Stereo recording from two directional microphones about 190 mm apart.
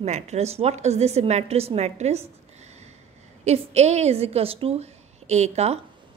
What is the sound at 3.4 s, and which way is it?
A woman's voice, 35° right (ahead or behind).